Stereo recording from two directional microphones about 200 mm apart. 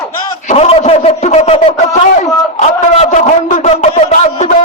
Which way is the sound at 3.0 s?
35° left (ahead or behind).